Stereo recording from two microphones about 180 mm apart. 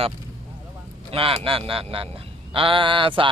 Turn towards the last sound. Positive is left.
turn(degrees=-30)  # may be behind; listen again after turning